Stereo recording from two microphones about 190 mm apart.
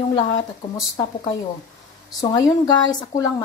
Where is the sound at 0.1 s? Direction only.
25° left (ahead or behind).